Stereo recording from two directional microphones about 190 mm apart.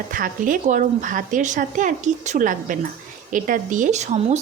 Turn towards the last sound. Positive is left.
turn(degrees=-35)  # may be behind; listen again after turning